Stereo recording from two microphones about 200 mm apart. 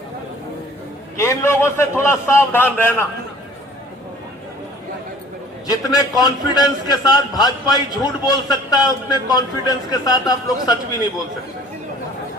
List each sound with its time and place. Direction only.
1.1 s a man's voice: 15° left (ahead or behind)
5.6 s a man's voice: 20° left (ahead or behind)